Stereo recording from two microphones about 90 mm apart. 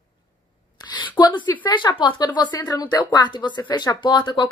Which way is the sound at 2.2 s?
50° left (ahead or behind).